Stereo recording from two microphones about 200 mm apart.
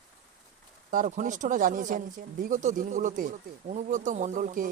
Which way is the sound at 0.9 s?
40° right (ahead or behind).